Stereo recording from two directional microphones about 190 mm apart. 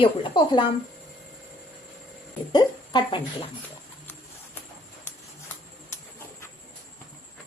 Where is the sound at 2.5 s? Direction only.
25° left (ahead or behind).